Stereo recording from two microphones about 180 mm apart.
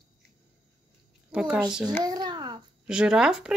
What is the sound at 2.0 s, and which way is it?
Speech, 25° right (ahead or behind).